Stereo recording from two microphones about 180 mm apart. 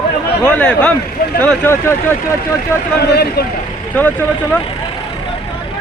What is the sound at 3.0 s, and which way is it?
Speech, 65° left (ahead or behind).